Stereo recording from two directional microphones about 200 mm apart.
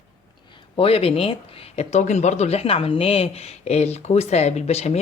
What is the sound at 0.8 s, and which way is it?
Speech, 30° left (ahead or behind).